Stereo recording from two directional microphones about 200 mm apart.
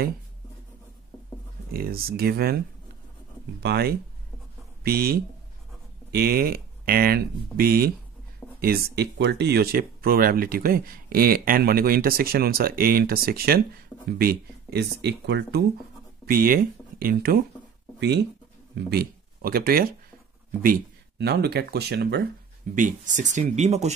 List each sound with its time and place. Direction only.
1.7 s speech: 50° right (ahead or behind)
3.6 s speech: 50° right (ahead or behind)
16.3 s speech: 45° right (ahead or behind)
18.8 s speech: 50° right (ahead or behind)
22.8 s speech: 40° right (ahead or behind)